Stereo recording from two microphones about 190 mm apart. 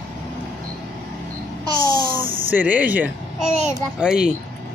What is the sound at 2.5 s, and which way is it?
Speech, 10° right (ahead or behind).